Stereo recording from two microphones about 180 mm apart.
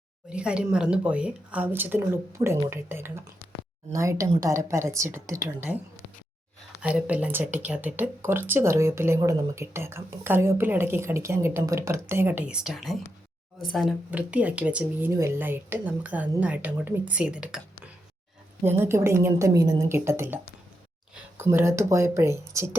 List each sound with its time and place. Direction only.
0.3 s speech: 5° right (ahead or behind)
6.8 s speech: 10° right (ahead or behind)
18.6 s speech: 10° right (ahead or behind)